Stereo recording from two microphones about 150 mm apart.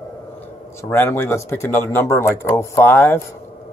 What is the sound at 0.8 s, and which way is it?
Speech, 15° left (ahead or behind).